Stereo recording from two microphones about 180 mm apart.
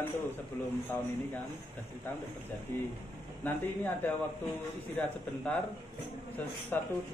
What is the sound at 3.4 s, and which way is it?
Speech, 10° left (ahead or behind).